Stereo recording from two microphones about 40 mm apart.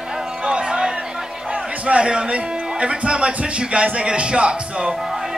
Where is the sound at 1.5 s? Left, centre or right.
Right.